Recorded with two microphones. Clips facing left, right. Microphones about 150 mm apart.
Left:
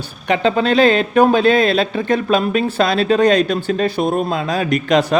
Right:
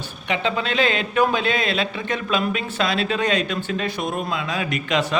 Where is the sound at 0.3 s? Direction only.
40° left (ahead or behind).